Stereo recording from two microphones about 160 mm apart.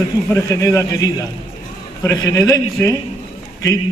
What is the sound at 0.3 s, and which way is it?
A man's voice, 20° left (ahead or behind).